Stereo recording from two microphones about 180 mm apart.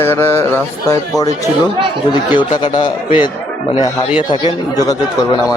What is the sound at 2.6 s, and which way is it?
Speech, 25° left (ahead or behind).